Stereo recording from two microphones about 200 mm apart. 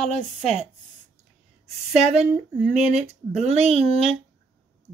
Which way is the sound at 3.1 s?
30° right (ahead or behind).